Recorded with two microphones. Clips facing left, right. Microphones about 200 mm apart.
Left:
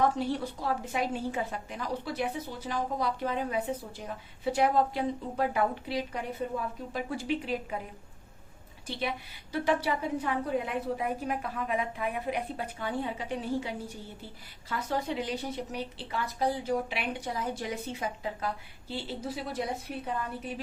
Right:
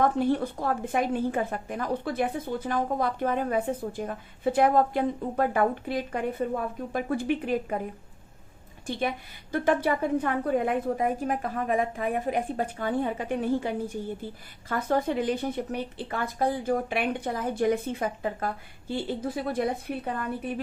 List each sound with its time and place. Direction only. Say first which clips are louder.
0.0 s a woman's voice: right 4 dB; 55° right (ahead or behind)
8.9 s a woman's voice: right 5 dB; 50° right (ahead or behind)